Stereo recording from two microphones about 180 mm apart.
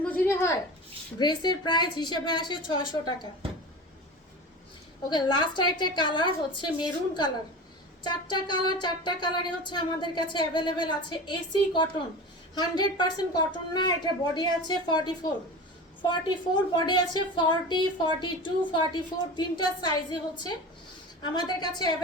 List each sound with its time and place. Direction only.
0.0 s a sound: 10° left (ahead or behind)
1.2 s speech: 25° left (ahead or behind)
5.0 s speech: 25° left (ahead or behind)